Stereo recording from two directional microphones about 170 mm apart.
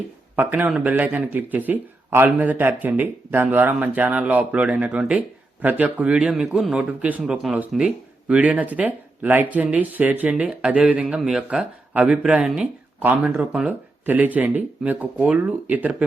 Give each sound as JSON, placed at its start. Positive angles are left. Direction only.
{"t": 0.3, "sound": "a man's voice", "side_deg": -10}